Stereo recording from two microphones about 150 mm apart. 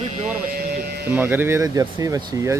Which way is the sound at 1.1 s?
15° right (ahead or behind).